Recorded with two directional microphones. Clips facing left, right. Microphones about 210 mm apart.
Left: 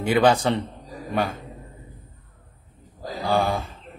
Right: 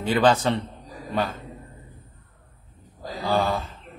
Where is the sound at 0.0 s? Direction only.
15° left (ahead or behind).